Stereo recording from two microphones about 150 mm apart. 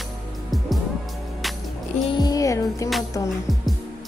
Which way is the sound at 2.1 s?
25° left (ahead or behind).